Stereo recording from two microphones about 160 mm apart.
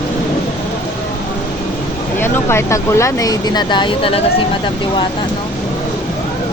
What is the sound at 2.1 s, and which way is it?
Speech, 15° left (ahead or behind).